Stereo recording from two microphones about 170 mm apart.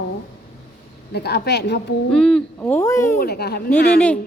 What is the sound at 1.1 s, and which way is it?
Speech, 70° left (ahead or behind).